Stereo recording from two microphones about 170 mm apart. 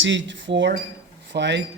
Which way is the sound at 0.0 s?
90° right.